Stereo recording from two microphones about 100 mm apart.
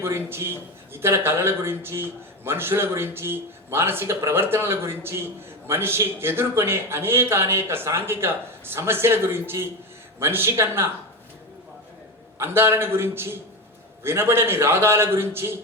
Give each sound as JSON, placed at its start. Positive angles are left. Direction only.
{"t": 0.0, "sound": "speech", "side_deg": -25}
{"t": 12.4, "sound": "speech", "side_deg": -25}